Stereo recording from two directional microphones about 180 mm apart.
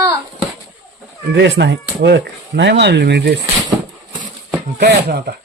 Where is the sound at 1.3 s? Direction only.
75° right (ahead or behind).